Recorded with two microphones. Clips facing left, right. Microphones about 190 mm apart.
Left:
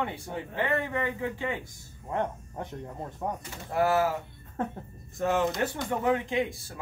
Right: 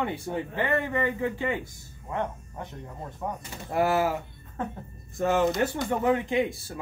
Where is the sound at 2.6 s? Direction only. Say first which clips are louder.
Left 1 dB; 40° left (ahead or behind).